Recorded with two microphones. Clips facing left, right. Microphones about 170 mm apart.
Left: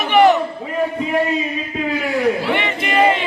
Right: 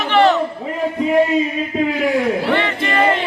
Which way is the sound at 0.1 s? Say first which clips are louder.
Left 2 dB; 15° left (ahead or behind).